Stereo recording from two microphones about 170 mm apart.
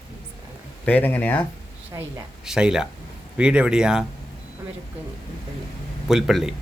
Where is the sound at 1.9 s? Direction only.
20° right (ahead or behind).